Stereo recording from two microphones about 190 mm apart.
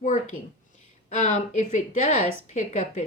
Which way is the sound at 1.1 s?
40° left (ahead or behind).